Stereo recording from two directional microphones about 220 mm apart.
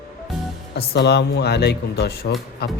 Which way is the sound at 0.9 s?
50° left (ahead or behind).